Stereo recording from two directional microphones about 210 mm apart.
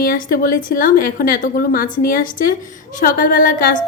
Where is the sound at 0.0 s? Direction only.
45° left (ahead or behind).